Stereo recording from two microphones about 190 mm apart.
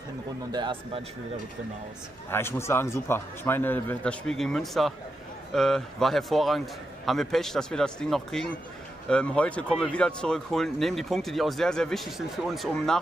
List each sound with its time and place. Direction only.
0.5 s speech: 25° right (ahead or behind)
2.3 s a man's voice: 15° left (ahead or behind)